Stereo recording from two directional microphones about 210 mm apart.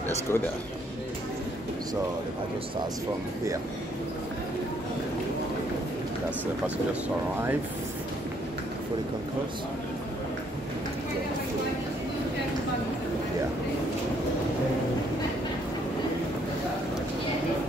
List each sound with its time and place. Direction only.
0.3 s a man's voice: 10° left (ahead or behind)